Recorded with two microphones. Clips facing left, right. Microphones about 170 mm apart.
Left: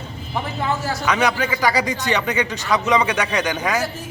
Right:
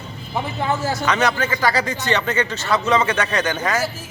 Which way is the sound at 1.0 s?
10° left (ahead or behind).